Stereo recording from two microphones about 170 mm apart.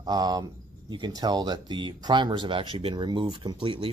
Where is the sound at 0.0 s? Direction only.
25° right (ahead or behind).